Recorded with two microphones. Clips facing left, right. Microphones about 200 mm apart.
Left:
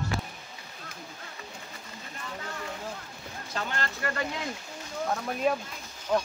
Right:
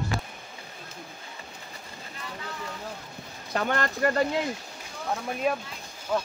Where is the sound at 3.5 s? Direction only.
55° right (ahead or behind).